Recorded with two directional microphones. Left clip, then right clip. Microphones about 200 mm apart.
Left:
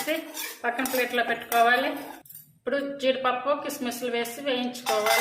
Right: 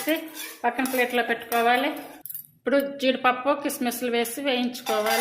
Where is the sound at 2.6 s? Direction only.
45° right (ahead or behind).